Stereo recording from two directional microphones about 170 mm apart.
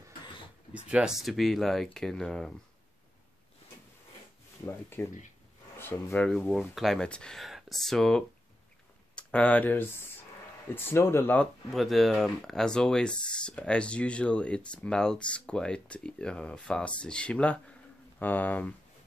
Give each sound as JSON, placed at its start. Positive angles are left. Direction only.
{"t": 0.7, "sound": "speech", "side_deg": -5}
{"t": 4.6, "sound": "speech", "side_deg": 15}
{"t": 11.7, "sound": "speech", "side_deg": 0}